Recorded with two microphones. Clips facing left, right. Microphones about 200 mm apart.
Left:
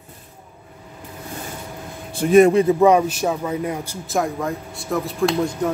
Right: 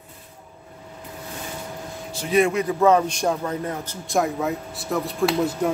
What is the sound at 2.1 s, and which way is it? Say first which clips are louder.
Speech: left 7 dB; 50° left (ahead or behind).